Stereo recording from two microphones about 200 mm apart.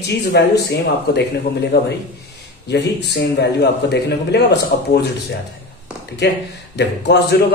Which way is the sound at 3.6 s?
55° left (ahead or behind).